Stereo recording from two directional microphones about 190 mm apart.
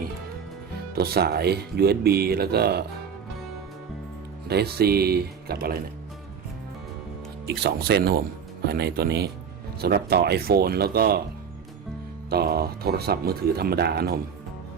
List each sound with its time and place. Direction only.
0.9 s speech: 55° right (ahead or behind)
4.4 s speech: 55° right (ahead or behind)
7.4 s speech: 60° right (ahead or behind)
12.3 s speech: 55° right (ahead or behind)